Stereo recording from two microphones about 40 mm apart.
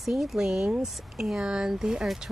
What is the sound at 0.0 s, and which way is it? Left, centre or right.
Speech, centre.